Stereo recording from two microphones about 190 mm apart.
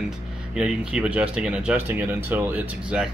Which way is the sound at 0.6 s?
5° right (ahead or behind).